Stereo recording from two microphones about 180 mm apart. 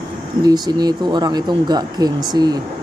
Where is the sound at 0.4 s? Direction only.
25° right (ahead or behind).